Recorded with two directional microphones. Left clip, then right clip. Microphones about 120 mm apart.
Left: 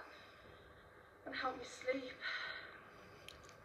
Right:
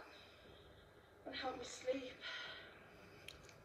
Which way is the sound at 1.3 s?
50° left (ahead or behind).